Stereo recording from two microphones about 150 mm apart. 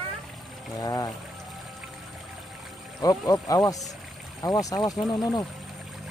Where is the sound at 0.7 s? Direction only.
25° left (ahead or behind).